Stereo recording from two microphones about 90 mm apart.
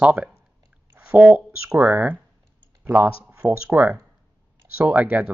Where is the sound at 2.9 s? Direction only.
25° right (ahead or behind).